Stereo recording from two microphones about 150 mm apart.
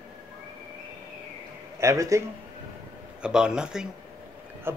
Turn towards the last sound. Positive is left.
turn(degrees=-5)  # may be behind; listen again after turning